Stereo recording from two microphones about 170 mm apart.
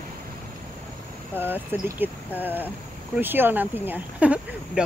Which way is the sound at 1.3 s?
10° right (ahead or behind).